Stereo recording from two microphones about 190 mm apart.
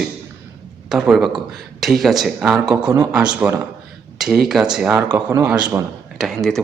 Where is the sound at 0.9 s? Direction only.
5° right (ahead or behind).